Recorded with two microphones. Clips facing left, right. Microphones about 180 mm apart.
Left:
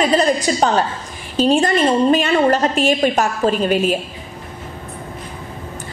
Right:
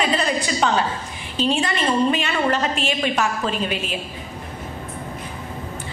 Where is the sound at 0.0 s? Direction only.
40° left (ahead or behind).